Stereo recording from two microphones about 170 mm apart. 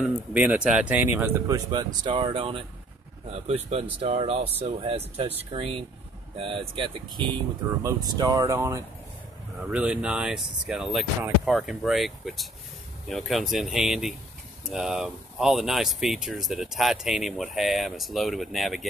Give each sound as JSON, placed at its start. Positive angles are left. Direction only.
{"t": 0.0, "sound": "speech", "side_deg": -5}
{"t": 1.7, "sound": "speech", "side_deg": -25}
{"t": 9.6, "sound": "speech", "side_deg": -5}